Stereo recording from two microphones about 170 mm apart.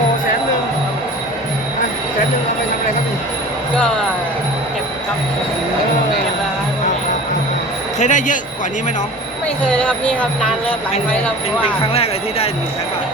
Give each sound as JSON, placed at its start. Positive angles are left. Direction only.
{"t": 3.8, "sound": "speech", "side_deg": 5}
{"t": 7.9, "sound": "speech", "side_deg": 45}
{"t": 9.6, "sound": "speech", "side_deg": 5}